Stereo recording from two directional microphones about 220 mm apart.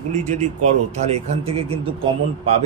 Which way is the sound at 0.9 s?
30° right (ahead or behind).